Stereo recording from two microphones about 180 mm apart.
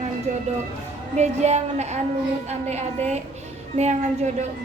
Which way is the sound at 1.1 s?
40° right (ahead or behind).